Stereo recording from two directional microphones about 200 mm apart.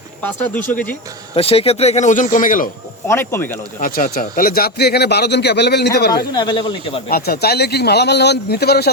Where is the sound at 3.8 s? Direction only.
45° left (ahead or behind).